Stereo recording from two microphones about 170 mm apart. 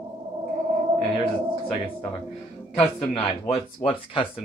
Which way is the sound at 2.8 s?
35° left (ahead or behind).